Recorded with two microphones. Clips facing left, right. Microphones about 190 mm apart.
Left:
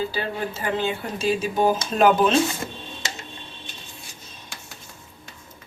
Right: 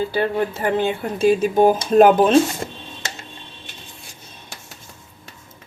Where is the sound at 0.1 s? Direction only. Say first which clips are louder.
Right 7 dB; 55° right (ahead or behind).